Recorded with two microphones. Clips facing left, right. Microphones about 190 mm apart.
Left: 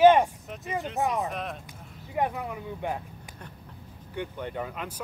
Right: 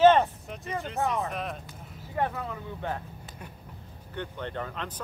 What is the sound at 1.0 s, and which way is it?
Speech, 15° left (ahead or behind).